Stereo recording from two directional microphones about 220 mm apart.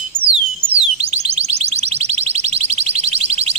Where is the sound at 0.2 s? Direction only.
25° right (ahead or behind).